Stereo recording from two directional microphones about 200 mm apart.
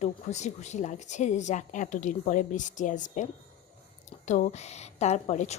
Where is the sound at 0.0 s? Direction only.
35° left (ahead or behind).